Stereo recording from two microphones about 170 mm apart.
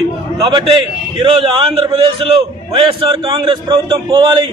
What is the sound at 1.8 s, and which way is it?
A man's voice, 30° right (ahead or behind).